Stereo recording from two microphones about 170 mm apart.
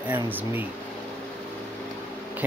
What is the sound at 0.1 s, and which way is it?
Speech, 10° right (ahead or behind).